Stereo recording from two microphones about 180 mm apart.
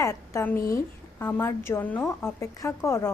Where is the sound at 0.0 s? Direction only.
15° left (ahead or behind).